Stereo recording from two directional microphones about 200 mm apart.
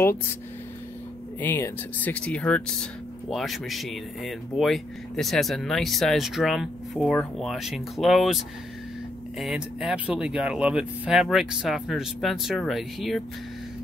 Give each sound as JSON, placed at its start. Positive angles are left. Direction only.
{"t": 1.4, "sound": "speech", "side_deg": 10}